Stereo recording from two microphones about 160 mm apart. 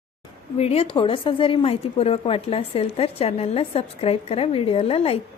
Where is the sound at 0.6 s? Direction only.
35° left (ahead or behind).